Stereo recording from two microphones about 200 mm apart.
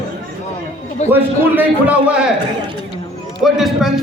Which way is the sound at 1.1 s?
10° right (ahead or behind).